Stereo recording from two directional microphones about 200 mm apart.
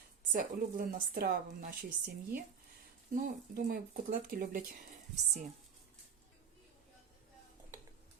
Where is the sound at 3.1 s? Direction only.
45° right (ahead or behind).